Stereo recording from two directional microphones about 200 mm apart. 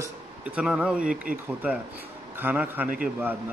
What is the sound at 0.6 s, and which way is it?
Speech, 5° right (ahead or behind).